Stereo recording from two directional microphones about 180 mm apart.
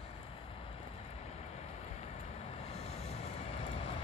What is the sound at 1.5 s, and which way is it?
Vehicle, 35° left (ahead or behind).